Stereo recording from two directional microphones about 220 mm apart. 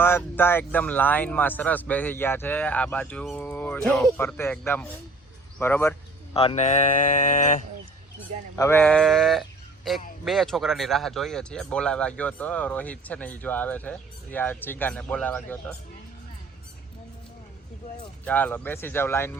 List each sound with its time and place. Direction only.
0.2 s speech: 10° left (ahead or behind)
6.3 s speech: 25° left (ahead or behind)
8.5 s speech: 10° left (ahead or behind)
18.3 s speech: 5° left (ahead or behind)